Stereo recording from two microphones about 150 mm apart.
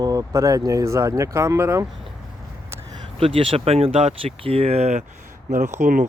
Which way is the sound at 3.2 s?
40° right (ahead or behind).